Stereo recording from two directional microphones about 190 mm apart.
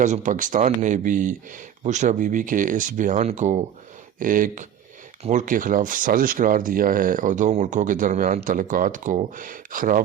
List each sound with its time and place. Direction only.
0.0 s speech: 40° right (ahead or behind)